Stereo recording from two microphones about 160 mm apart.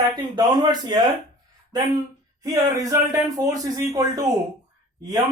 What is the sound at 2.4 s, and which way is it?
Speech, 25° right (ahead or behind).